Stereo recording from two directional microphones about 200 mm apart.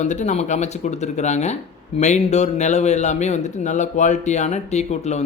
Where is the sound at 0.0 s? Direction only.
35° left (ahead or behind).